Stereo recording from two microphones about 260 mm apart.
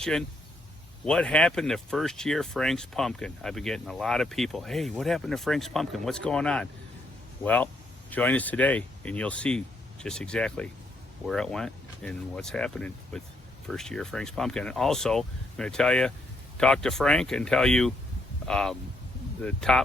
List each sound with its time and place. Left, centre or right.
0.0 s speech: centre